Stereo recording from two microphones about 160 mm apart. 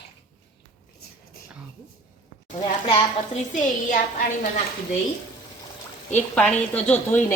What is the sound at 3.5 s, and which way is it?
Speech, 55° left (ahead or behind).